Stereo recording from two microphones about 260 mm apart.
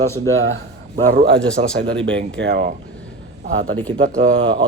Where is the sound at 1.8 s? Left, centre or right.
Right.